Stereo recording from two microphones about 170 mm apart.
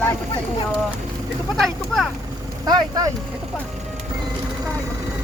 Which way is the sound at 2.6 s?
25° right (ahead or behind).